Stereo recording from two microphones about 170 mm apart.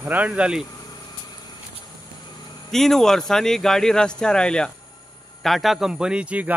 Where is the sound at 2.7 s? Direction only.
Centre (ahead or behind).